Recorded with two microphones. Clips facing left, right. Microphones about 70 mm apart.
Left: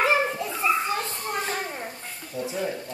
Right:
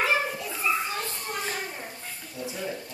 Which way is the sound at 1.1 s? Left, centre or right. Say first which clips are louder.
Left 4 dB; left.